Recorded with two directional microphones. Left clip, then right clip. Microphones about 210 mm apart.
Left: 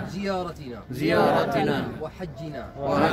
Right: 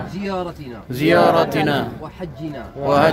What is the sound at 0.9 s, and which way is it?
A man's voice, 35° right (ahead or behind).